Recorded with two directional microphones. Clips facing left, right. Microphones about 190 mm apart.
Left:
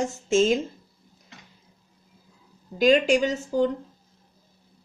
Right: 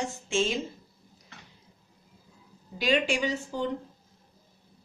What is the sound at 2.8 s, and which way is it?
Speech, 45° left (ahead or behind).